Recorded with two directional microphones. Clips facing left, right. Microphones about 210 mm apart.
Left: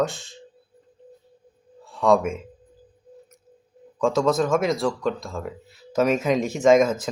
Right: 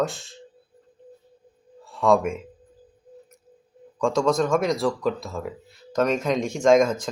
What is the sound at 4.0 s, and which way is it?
Speech, centre (ahead or behind).